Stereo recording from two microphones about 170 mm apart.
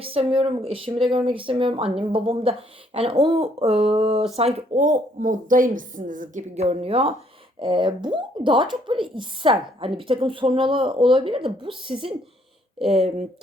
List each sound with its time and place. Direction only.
0.0 s a woman's voice: 35° right (ahead or behind)